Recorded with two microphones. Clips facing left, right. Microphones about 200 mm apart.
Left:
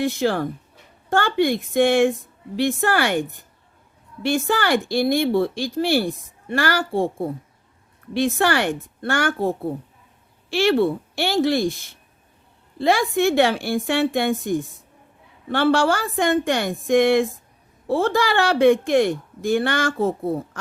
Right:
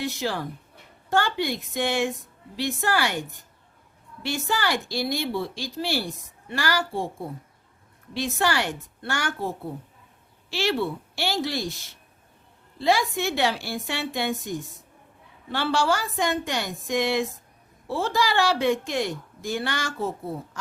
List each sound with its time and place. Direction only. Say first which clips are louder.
0.0 s a woman's voice: left 7 dB; 50° left (ahead or behind)